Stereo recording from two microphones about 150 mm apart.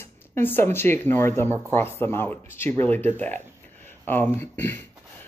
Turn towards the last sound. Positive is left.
turn(degrees=15)  # may be behind; listen again after turning